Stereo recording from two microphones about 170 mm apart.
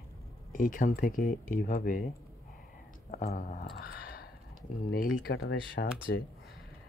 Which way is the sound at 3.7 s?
65° left (ahead or behind).